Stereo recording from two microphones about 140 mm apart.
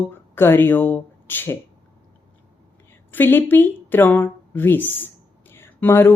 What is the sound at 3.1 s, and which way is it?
Speech, 15° left (ahead or behind).